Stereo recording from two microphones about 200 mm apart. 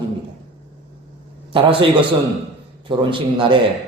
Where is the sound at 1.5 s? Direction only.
25° right (ahead or behind).